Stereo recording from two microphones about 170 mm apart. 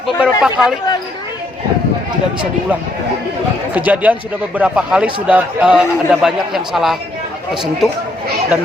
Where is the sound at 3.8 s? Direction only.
10° right (ahead or behind).